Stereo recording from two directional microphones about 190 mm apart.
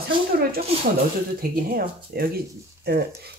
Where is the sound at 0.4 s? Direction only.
55° right (ahead or behind).